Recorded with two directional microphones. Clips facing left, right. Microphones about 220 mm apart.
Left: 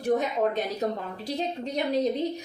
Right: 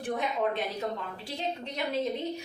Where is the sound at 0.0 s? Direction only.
40° left (ahead or behind).